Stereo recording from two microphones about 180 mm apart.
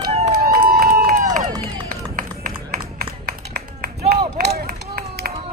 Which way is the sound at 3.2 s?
60° right (ahead or behind).